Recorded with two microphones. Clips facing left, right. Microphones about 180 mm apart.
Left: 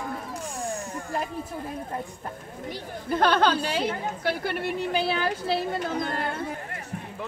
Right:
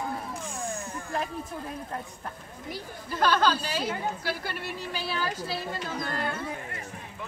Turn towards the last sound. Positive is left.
turn(degrees=25)  # may be behind; listen again after turning